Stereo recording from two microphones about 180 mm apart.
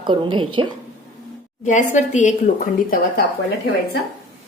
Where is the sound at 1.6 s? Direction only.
45° left (ahead or behind).